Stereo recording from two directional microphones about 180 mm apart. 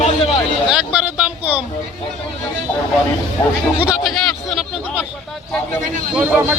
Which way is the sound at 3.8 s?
Centre (ahead or behind).